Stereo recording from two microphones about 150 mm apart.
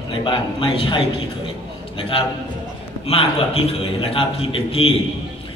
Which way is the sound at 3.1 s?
40° left (ahead or behind).